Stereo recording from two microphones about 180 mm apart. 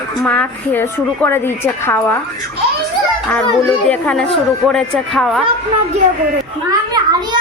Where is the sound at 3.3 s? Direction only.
5° left (ahead or behind).